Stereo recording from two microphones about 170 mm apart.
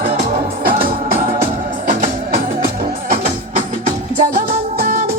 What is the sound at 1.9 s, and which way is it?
Music, 55° right (ahead or behind).